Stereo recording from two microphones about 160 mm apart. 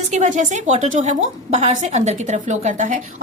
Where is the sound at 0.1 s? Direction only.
50° right (ahead or behind).